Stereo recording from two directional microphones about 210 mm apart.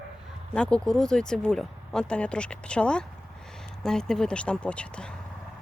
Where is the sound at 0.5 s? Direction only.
5° left (ahead or behind).